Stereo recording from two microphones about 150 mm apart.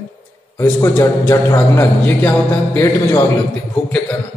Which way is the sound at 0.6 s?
20° left (ahead or behind).